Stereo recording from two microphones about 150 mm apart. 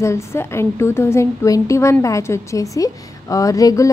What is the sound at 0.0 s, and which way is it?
A woman's voice, 20° left (ahead or behind).